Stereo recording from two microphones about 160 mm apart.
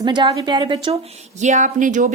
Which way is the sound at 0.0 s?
30° right (ahead or behind).